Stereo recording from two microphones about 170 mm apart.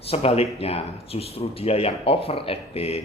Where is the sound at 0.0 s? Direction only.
35° left (ahead or behind).